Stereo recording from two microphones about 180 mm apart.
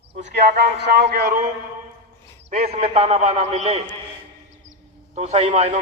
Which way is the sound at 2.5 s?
35° right (ahead or behind).